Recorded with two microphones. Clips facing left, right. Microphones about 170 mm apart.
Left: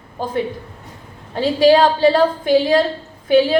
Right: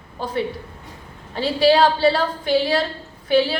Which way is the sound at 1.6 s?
45° left (ahead or behind).